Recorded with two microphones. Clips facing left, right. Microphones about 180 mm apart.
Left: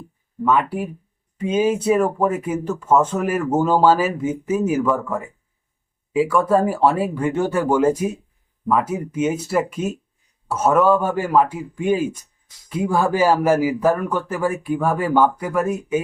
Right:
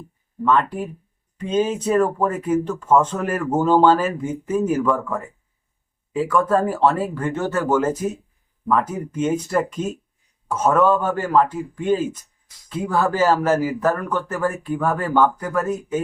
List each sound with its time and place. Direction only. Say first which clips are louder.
0.4 s a man's voice: even; 10° left (ahead or behind)